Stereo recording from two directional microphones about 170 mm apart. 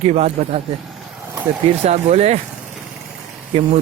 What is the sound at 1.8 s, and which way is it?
Speech, 40° right (ahead or behind).